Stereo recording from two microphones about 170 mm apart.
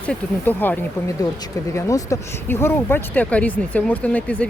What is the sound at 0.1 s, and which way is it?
Speech, 10° left (ahead or behind).